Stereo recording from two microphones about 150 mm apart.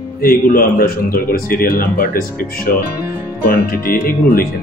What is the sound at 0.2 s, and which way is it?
Speech, 75° left (ahead or behind).